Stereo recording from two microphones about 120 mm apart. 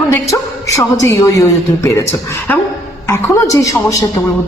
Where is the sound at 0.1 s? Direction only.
25° left (ahead or behind).